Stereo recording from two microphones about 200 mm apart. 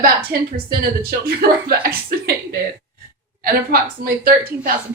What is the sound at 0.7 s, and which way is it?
Speech, 50° right (ahead or behind).